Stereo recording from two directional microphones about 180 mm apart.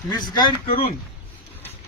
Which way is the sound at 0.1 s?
20° left (ahead or behind).